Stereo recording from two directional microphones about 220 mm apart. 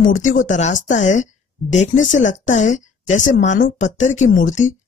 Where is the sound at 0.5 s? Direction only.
35° left (ahead or behind).